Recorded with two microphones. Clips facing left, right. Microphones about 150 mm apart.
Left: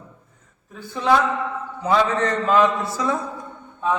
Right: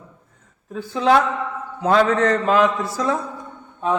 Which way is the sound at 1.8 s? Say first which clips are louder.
Right 3 dB; 75° right (ahead or behind).